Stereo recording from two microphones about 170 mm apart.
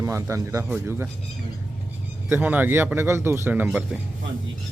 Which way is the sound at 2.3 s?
10° right (ahead or behind).